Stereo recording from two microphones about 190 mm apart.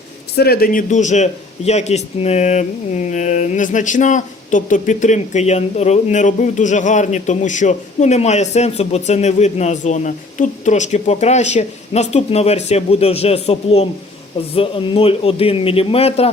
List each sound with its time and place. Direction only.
0.3 s a man's voice: 55° left (ahead or behind); by 16.3 s 30° left (ahead or behind)